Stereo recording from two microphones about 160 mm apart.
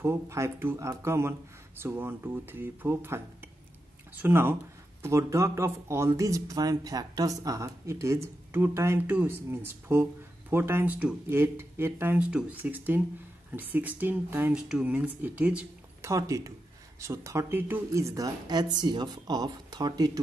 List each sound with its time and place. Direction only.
0.0 s speech: 15° right (ahead or behind)
4.2 s speech: 15° right (ahead or behind)